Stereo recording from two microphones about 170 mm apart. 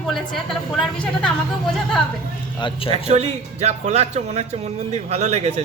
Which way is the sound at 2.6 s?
35° left (ahead or behind).